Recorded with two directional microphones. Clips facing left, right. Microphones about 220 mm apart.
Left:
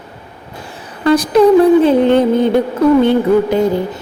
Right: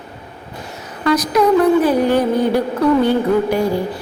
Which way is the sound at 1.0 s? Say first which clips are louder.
Left 5 dB; 30° left (ahead or behind).